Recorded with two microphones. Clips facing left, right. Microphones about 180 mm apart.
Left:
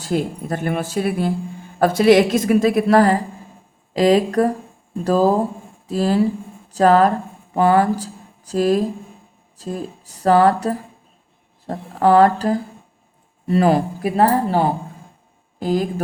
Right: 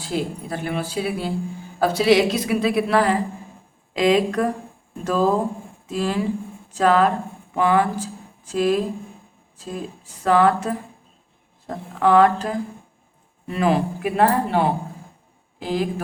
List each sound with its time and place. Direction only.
0.0 s a woman's voice: 45° left (ahead or behind)